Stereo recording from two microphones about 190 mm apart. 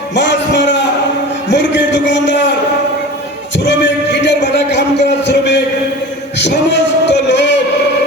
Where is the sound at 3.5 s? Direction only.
70° left (ahead or behind).